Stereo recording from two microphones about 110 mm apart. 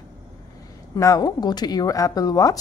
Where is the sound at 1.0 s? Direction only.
30° left (ahead or behind).